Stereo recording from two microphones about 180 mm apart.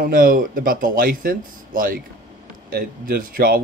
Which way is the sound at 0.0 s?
50° right (ahead or behind).